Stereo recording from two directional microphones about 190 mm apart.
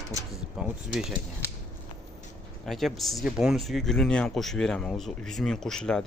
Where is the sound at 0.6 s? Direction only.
Centre (ahead or behind).